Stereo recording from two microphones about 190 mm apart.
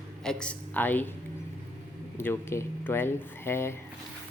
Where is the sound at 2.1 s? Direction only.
10° left (ahead or behind).